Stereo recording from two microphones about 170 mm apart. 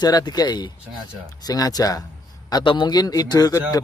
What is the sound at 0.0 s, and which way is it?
Speech, 25° left (ahead or behind).